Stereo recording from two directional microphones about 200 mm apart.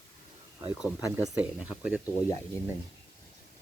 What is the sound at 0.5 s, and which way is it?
Speech, 10° right (ahead or behind).